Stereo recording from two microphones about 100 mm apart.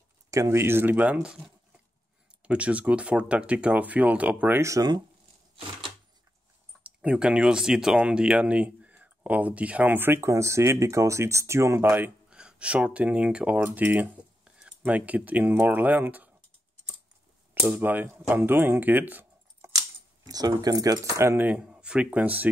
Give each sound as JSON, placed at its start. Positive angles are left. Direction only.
{"t": 0.3, "sound": "speech", "side_deg": -30}
{"t": 4.6, "sound": "speech", "side_deg": -30}
{"t": 6.8, "sound": "speech", "side_deg": -10}
{"t": 12.3, "sound": "speech", "side_deg": -10}
{"t": 17.6, "sound": "speech", "side_deg": -5}
{"t": 17.8, "sound": "speech", "side_deg": -15}
{"t": 20.2, "sound": "speech", "side_deg": -40}
{"t": 21.5, "sound": "speech", "side_deg": -10}